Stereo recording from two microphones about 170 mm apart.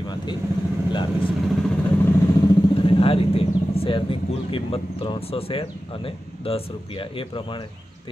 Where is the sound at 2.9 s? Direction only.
35° left (ahead or behind).